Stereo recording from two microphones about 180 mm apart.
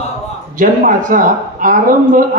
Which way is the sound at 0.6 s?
50° right (ahead or behind).